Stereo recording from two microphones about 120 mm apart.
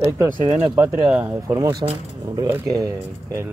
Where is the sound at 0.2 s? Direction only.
20° right (ahead or behind).